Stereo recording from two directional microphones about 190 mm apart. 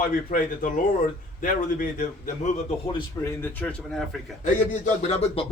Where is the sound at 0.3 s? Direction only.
45° left (ahead or behind).